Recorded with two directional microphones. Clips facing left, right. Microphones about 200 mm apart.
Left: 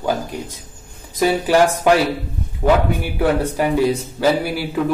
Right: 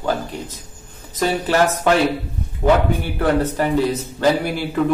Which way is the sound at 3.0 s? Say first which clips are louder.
Even; 10° left (ahead or behind).